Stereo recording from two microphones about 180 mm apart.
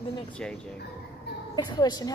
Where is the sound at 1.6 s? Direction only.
20° left (ahead or behind).